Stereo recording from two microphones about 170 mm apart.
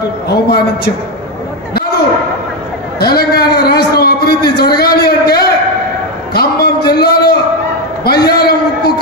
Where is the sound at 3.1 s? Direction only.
65° left (ahead or behind).